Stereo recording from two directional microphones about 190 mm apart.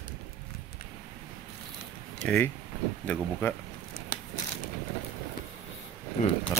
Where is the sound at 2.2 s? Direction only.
5° left (ahead or behind).